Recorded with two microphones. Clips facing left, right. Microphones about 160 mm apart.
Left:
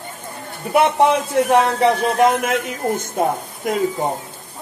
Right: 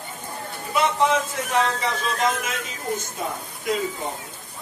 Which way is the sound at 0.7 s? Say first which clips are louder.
Left 6 dB; 60° left (ahead or behind).